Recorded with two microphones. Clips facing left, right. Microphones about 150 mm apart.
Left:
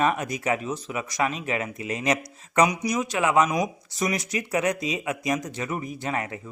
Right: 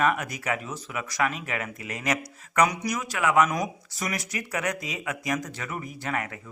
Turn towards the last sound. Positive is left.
turn(degrees=20)  # may be behind; listen again after turning